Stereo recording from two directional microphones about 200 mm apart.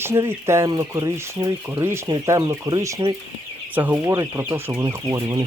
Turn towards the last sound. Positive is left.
turn(degrees=-20)  # may be behind; listen again after turning